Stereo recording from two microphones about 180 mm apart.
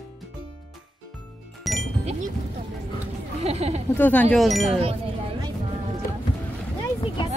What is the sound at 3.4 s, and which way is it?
Speech, 35° right (ahead or behind).